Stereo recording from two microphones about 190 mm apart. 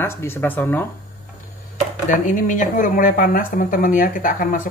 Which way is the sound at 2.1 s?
45° left (ahead or behind).